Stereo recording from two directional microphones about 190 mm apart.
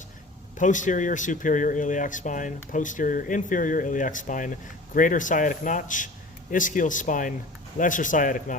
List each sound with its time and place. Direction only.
0.6 s speech: 40° left (ahead or behind)